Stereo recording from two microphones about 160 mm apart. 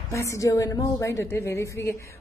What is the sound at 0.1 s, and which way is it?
A woman's voice, 20° left (ahead or behind).